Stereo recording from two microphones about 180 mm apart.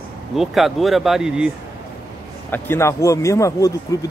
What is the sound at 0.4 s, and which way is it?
Speech, centre (ahead or behind).